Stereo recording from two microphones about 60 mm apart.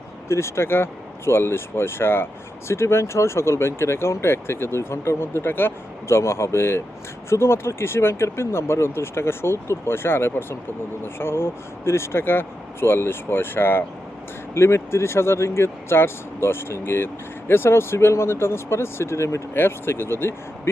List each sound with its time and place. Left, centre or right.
0.3 s speech: left
19.5 s speech: left